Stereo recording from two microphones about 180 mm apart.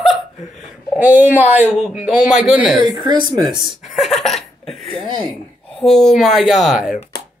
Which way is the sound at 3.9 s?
Centre (ahead or behind).